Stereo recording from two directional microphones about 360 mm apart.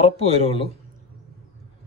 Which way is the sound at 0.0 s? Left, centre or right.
Centre.